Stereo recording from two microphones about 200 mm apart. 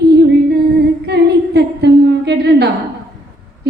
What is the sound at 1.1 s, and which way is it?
Humming, 55° right (ahead or behind).